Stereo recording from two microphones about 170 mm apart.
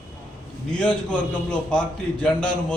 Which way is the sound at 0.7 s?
5° left (ahead or behind).